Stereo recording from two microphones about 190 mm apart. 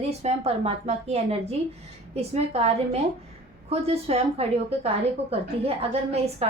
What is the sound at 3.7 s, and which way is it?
Speech, 30° right (ahead or behind).